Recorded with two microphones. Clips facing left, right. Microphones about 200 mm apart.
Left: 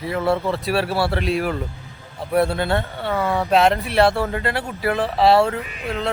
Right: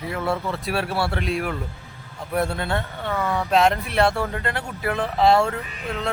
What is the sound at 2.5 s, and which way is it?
Speech, 5° left (ahead or behind).